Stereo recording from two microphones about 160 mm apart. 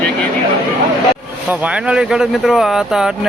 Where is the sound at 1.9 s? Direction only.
5° right (ahead or behind).